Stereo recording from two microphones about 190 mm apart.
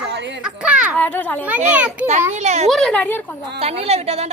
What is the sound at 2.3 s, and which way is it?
Speech, 35° right (ahead or behind).